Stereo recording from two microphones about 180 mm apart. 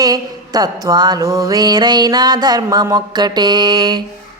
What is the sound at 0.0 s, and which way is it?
Speech, 20° right (ahead or behind).